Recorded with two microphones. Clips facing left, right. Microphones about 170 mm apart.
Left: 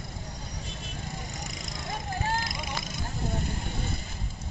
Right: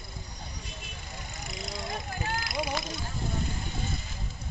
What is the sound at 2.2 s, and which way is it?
Vehicle, 40° left (ahead or behind).